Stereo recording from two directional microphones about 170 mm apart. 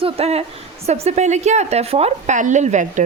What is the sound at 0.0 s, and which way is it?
A woman's voice, 35° right (ahead or behind).